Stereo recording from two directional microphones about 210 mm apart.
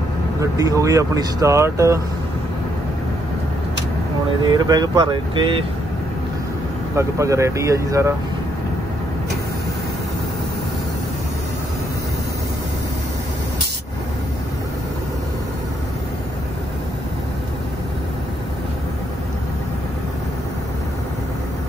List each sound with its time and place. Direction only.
0.4 s speech: 15° right (ahead or behind)
4.6 s speech: 20° right (ahead or behind)
7.0 s speech: 15° right (ahead or behind)